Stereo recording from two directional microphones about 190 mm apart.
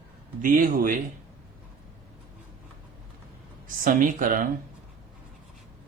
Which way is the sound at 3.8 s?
45° right (ahead or behind).